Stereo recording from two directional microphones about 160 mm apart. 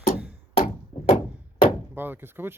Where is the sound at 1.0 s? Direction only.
30° left (ahead or behind).